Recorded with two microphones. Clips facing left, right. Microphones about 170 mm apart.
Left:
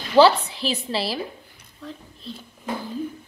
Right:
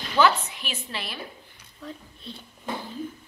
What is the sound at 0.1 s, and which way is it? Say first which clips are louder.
A woman's voice: left 7 dB; 30° left (ahead or behind).